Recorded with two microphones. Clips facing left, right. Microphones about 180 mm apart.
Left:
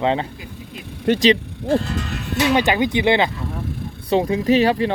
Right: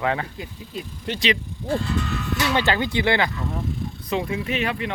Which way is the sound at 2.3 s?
15° left (ahead or behind).